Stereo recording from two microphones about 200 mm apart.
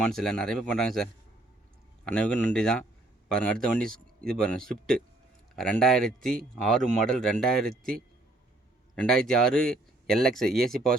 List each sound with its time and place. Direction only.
0.0 s speech: centre (ahead or behind)
2.0 s speech: 5° left (ahead or behind)
4.6 s speech: 45° right (ahead or behind)
5.5 s speech: 5° left (ahead or behind)
9.0 s speech: centre (ahead or behind)